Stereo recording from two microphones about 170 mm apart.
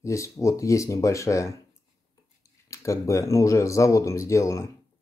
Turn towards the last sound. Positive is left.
turn(degrees=20)  # may be behind; listen again after turning